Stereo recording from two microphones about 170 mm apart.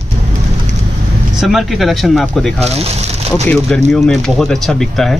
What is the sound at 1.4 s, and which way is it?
A man's voice, centre (ahead or behind).